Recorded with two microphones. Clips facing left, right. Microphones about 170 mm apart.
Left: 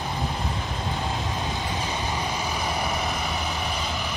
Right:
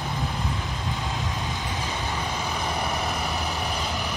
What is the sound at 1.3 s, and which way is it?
Vehicle, 20° left (ahead or behind).